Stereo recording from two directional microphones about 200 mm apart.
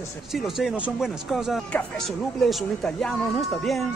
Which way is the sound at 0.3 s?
Centre (ahead or behind).